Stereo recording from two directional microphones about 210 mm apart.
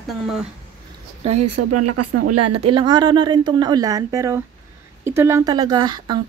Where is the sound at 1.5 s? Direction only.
90° right.